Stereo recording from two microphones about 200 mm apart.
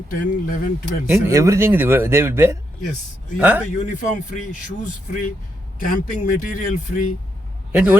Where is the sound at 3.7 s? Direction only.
40° left (ahead or behind).